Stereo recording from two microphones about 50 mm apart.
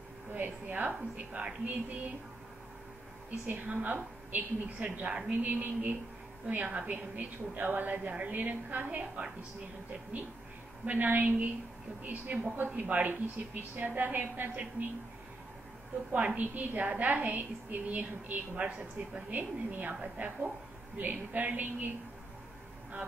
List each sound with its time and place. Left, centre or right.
0.3 s a woman's voice: right
3.3 s a woman's voice: right
5.4 s a woman's voice: right
16.1 s a woman's voice: right